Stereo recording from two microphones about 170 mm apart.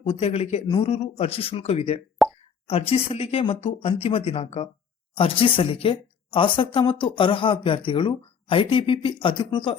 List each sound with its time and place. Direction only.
0.0 s speech: 40° left (ahead or behind)
2.2 s plop: centre (ahead or behind)
2.6 s speech: 35° left (ahead or behind)